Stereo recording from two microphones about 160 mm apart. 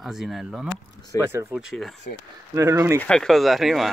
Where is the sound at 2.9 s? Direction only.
5° left (ahead or behind).